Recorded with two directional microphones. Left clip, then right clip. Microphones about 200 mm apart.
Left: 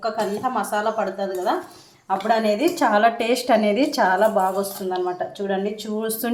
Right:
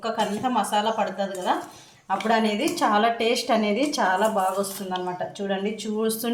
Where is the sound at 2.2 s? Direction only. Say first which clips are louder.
Left 4 dB; 20° left (ahead or behind).